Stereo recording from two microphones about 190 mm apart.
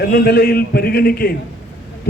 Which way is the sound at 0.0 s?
50° left (ahead or behind).